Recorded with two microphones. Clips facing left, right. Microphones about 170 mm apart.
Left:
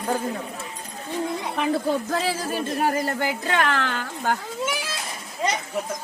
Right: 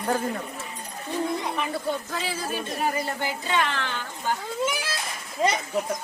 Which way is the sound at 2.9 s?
50° left (ahead or behind).